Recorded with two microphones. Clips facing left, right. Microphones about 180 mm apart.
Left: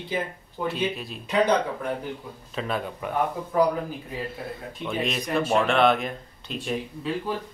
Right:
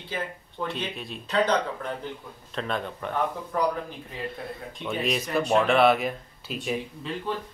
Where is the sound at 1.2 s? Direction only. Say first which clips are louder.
Left 2 dB; 10° left (ahead or behind).